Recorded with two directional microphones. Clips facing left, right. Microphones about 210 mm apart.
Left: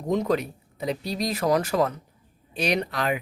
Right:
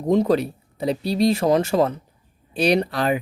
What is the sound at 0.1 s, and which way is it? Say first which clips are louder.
Speech: right 6 dB; 35° right (ahead or behind).